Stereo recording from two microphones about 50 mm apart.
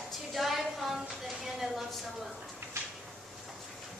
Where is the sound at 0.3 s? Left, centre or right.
Centre.